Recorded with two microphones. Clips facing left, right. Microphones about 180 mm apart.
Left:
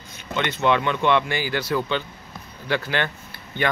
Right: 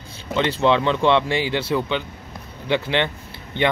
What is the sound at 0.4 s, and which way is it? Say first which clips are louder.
Speech: right 3 dB; 30° right (ahead or behind).